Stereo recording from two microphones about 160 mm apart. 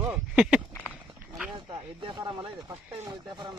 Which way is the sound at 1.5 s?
35° right (ahead or behind).